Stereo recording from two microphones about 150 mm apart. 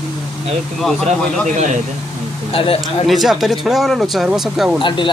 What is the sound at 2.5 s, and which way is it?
Speech, 40° left (ahead or behind).